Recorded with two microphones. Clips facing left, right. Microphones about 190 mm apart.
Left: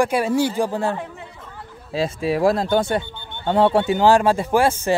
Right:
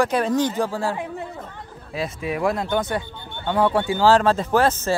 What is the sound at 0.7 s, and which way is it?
A man's voice, 20° left (ahead or behind).